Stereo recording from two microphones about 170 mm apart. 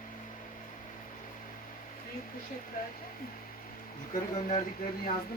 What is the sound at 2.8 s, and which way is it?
Speech, 55° left (ahead or behind).